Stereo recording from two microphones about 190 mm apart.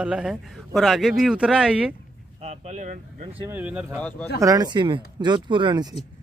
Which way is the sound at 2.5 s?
35° right (ahead or behind).